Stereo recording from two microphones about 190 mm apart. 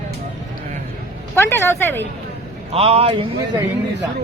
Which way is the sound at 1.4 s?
10° left (ahead or behind).